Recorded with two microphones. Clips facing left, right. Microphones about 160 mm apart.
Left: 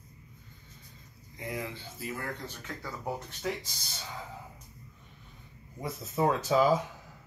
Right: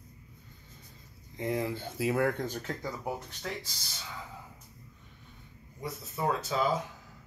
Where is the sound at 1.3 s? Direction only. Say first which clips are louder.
Right 6 dB; 30° right (ahead or behind).